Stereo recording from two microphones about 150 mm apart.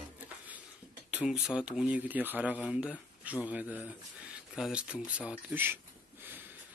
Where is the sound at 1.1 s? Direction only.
5° right (ahead or behind).